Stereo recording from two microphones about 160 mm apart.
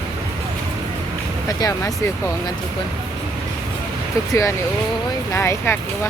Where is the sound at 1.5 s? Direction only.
20° left (ahead or behind).